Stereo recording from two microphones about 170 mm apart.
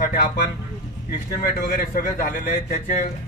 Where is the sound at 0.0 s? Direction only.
50° left (ahead or behind).